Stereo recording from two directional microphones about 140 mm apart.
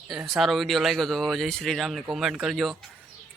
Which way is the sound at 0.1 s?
Centre (ahead or behind).